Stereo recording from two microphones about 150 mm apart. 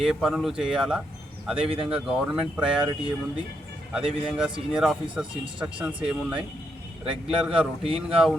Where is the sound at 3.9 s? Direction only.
5° right (ahead or behind).